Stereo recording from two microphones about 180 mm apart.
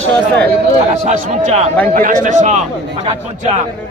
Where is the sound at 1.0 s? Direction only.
45° right (ahead or behind).